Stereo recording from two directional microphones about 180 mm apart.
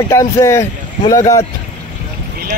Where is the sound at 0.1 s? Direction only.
15° left (ahead or behind).